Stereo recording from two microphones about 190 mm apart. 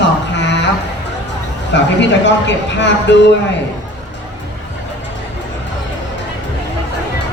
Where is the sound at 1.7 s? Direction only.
70° left (ahead or behind).